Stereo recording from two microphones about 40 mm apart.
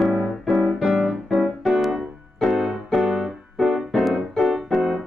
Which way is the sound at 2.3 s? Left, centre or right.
Centre.